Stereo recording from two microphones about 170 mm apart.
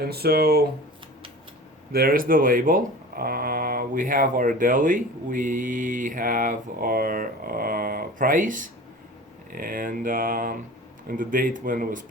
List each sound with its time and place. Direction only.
0.0 s speech: 65° right (ahead or behind)
1.9 s speech: 60° right (ahead or behind)